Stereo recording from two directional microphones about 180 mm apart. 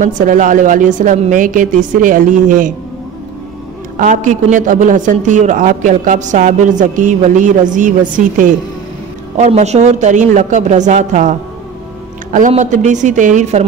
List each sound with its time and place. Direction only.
0.0 s a man's voice: 45° right (ahead or behind)
3.9 s a man's voice: 45° right (ahead or behind)
9.4 s a woman's voice: 40° right (ahead or behind)